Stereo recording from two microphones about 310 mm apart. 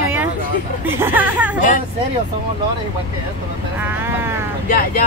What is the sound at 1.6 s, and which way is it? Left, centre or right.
Speech, left.